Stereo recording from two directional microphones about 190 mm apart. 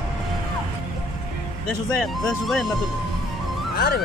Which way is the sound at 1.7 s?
5° left (ahead or behind).